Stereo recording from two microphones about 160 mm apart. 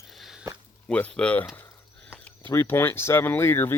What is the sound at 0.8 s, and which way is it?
Speech, 5° left (ahead or behind).